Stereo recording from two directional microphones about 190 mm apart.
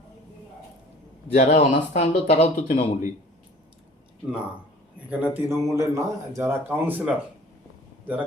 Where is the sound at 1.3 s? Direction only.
35° left (ahead or behind).